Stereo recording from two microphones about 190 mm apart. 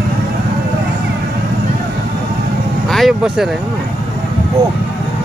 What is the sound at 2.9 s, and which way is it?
Vehicle, centre (ahead or behind).